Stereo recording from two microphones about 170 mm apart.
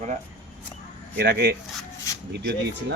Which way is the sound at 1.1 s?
75° right (ahead or behind).